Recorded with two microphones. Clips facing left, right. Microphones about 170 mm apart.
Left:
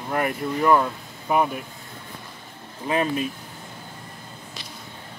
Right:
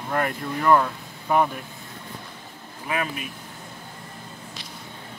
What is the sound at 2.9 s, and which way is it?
Speech, 30° left (ahead or behind).